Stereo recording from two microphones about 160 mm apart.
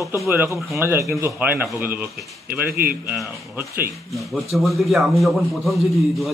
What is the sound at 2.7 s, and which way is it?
Speech, 65° right (ahead or behind).